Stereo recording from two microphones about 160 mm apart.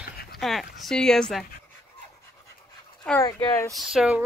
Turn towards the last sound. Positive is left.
turn(degrees=-5)  # may be behind; listen again after turning